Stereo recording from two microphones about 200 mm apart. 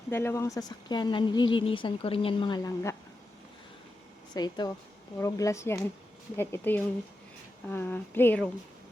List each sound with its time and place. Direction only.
0.1 s a woman's voice: 10° left (ahead or behind)
4.4 s a woman's voice: 20° left (ahead or behind)